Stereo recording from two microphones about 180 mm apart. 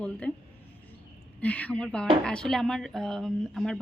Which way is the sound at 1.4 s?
10° left (ahead or behind).